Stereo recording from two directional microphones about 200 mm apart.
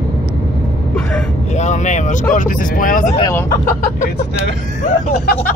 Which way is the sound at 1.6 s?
35° left (ahead or behind).